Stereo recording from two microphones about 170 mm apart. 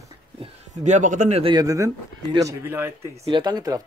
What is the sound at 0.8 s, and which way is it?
Speech, 45° right (ahead or behind).